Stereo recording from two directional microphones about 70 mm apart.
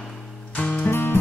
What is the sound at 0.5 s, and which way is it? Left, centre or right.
Music, left.